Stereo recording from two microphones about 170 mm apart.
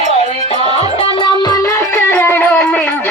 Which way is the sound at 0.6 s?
35° left (ahead or behind).